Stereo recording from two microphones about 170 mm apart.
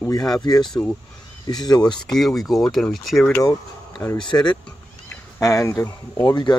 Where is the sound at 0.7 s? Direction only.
5° left (ahead or behind).